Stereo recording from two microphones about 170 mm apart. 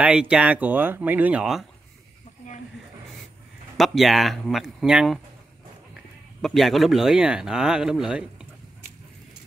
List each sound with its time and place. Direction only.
0.0 s speech: 5° right (ahead or behind)
3.7 s speech: centre (ahead or behind)
6.4 s speech: centre (ahead or behind)